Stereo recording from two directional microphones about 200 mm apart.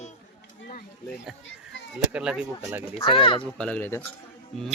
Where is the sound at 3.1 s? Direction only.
25° left (ahead or behind).